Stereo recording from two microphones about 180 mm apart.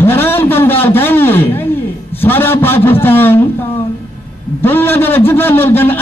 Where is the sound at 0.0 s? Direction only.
10° left (ahead or behind).